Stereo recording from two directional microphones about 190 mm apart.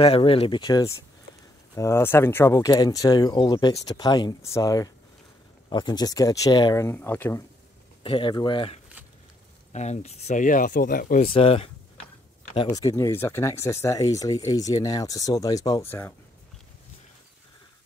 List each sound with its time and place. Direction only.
0.0 s speech: 30° left (ahead or behind); by 7.4 s 10° left (ahead or behind)
8.0 s speech: 25° left (ahead or behind); by 11.2 s 45° left (ahead or behind)
11.2 s speech: 30° left (ahead or behind)
12.6 s speech: 15° left (ahead or behind)